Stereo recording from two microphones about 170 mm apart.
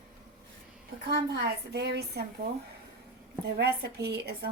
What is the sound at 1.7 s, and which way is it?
Speech, 75° right (ahead or behind).